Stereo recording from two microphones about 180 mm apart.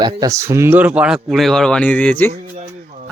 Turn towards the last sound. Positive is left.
turn(degrees=-40)  # may be behind; listen again after turning